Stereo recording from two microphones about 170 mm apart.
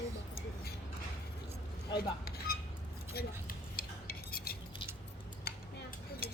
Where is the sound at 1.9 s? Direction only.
65° left (ahead or behind).